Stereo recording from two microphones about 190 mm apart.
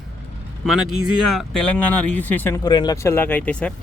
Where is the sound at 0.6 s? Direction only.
Centre (ahead or behind).